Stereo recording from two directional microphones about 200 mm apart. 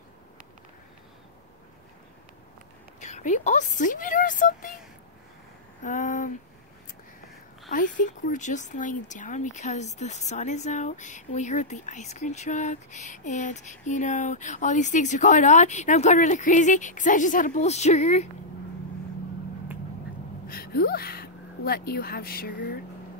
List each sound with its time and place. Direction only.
3.0 s speech: 35° left (ahead or behind)
5.8 s speech: 40° left (ahead or behind)
8.0 s speech: 40° left (ahead or behind)
20.4 s speech: 50° left (ahead or behind)